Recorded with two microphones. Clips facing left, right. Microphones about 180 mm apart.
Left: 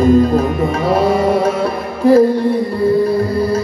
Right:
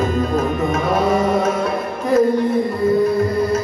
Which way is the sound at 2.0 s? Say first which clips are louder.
Left 7 dB; 30° left (ahead or behind).